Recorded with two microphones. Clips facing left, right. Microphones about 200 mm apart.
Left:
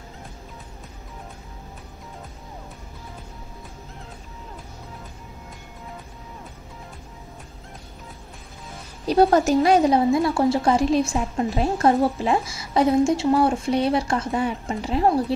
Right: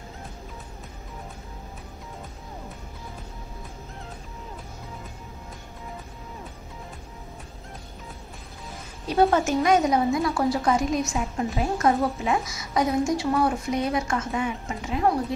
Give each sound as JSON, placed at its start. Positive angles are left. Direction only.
{"t": 9.0, "sound": "a woman's voice", "side_deg": 35}